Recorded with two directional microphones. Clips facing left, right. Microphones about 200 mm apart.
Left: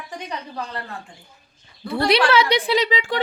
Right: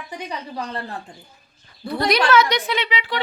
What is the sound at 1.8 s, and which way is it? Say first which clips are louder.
A woman's voice: left 1 dB; 30° left (ahead or behind).